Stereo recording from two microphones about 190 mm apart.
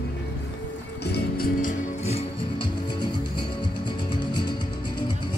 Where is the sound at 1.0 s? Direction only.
55° left (ahead or behind).